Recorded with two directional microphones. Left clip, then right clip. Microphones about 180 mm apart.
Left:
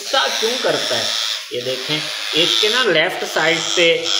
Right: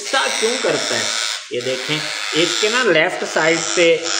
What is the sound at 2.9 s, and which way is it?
Speech, 30° right (ahead or behind).